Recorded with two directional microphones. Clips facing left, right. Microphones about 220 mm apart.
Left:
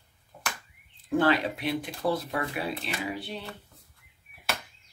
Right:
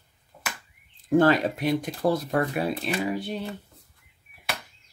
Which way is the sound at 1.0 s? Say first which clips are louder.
Right 5 dB; 45° right (ahead or behind).